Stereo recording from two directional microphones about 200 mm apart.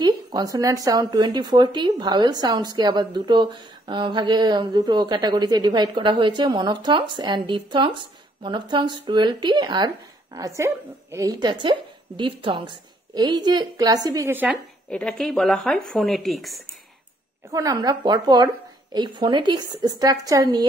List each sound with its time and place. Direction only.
0.0 s speech: 20° right (ahead or behind)
14.9 s a woman's voice: 5° left (ahead or behind)
17.5 s speech: 15° right (ahead or behind)